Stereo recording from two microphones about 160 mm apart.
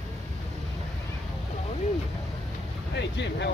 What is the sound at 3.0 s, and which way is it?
Vehicle, 90° left.